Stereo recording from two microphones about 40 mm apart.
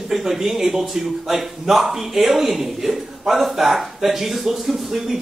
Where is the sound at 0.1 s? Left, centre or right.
Centre.